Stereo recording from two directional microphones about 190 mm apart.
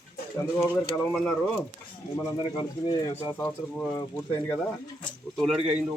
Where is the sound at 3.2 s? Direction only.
10° left (ahead or behind).